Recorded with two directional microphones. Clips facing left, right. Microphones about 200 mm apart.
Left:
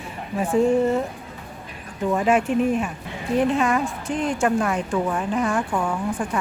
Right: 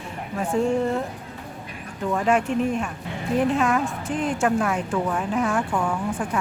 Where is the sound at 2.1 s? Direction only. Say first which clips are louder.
Left 2 dB; 10° left (ahead or behind).